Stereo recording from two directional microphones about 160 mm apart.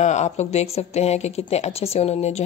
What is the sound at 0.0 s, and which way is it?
Speech, 45° left (ahead or behind).